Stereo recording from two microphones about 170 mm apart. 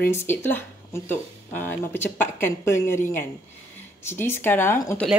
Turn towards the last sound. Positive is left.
turn(degrees=15)  # may be behind; listen again after turning